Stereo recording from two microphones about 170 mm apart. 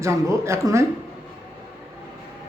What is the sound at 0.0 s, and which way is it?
Speech, 15° right (ahead or behind).